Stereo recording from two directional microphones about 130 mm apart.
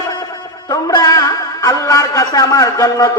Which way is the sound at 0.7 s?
30° left (ahead or behind).